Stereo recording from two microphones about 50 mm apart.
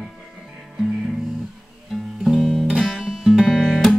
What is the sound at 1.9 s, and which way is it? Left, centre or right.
Music, centre.